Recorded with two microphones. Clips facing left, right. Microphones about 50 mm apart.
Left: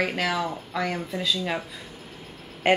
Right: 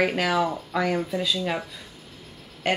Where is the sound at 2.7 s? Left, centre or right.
Left.